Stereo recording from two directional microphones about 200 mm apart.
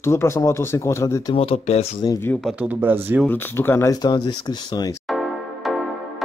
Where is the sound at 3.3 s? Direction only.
10° left (ahead or behind).